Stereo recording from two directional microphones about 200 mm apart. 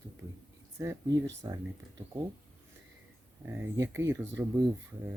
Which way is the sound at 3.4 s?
10° right (ahead or behind).